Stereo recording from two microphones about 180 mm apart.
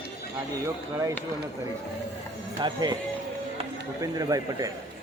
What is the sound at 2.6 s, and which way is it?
Speech, 25° right (ahead or behind).